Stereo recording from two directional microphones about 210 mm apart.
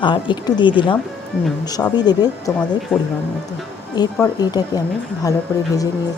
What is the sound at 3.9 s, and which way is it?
A woman's voice, 20° left (ahead or behind).